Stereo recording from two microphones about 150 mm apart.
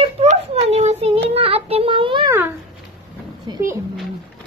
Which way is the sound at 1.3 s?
40° right (ahead or behind).